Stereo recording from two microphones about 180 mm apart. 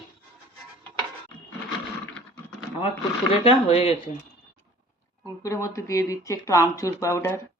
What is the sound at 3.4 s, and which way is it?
Speech, 30° left (ahead or behind).